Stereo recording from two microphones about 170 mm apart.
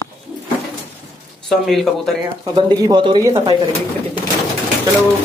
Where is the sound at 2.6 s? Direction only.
25° right (ahead or behind).